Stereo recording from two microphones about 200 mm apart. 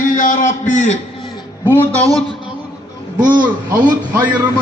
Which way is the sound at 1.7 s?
10° left (ahead or behind).